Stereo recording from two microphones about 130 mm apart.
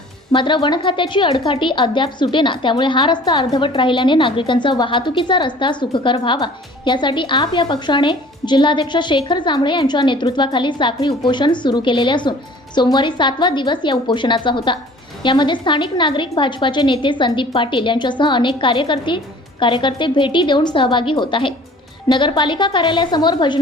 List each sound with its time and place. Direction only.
0.3 s a woman's voice: 35° left (ahead or behind)